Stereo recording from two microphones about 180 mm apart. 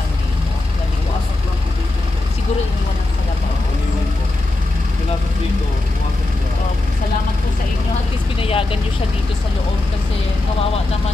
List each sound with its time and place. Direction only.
8.4 s vehicle: 30° left (ahead or behind)